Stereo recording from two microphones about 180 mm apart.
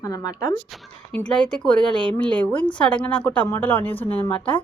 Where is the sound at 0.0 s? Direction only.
20° left (ahead or behind).